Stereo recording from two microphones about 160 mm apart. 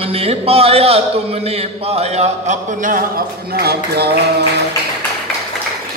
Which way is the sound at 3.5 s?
80° right.